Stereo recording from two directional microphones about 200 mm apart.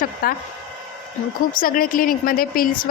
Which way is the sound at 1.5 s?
45° left (ahead or behind).